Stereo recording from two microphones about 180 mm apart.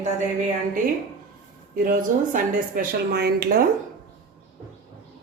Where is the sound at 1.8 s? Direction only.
50° right (ahead or behind).